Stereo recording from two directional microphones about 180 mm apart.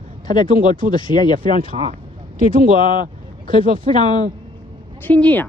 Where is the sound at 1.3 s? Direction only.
50° right (ahead or behind).